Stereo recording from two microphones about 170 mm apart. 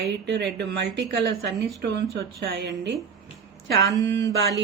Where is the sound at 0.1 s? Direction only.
90° right.